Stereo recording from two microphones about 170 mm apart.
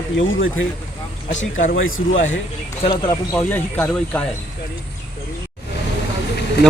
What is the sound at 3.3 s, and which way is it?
Speech, 10° left (ahead or behind).